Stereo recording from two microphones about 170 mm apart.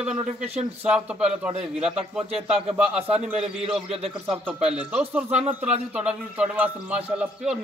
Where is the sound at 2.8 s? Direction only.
5° right (ahead or behind).